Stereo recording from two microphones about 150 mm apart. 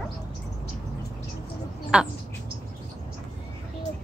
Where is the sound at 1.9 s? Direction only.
5° right (ahead or behind).